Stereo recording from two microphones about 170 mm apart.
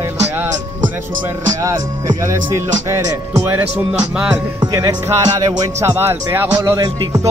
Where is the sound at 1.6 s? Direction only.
20° right (ahead or behind).